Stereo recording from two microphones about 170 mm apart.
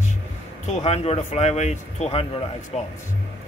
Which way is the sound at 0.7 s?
40° left (ahead or behind).